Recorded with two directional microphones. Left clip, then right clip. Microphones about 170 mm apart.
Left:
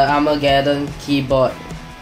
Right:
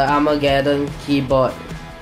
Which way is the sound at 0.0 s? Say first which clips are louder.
Left 1 dB; 15° right (ahead or behind).